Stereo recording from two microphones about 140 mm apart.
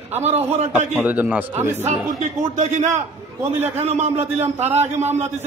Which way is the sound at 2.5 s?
55° right (ahead or behind).